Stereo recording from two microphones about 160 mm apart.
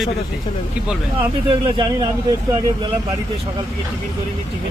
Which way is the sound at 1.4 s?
30° right (ahead or behind).